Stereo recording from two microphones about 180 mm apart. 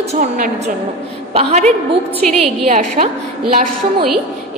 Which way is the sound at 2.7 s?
45° right (ahead or behind).